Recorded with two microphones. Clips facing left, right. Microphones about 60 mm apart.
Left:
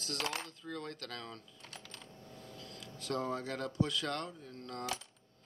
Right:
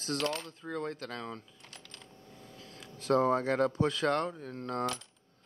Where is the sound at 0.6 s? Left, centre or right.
Right.